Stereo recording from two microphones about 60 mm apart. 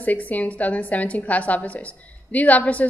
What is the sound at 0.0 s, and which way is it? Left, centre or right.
A woman's voice, left.